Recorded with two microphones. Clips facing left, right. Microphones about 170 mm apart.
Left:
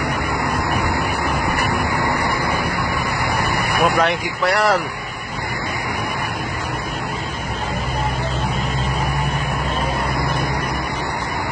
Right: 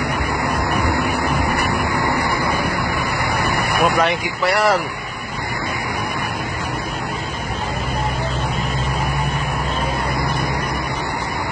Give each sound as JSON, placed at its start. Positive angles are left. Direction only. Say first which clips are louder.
{"t": 3.8, "sound": "speech", "louder": "even", "side_deg": 0}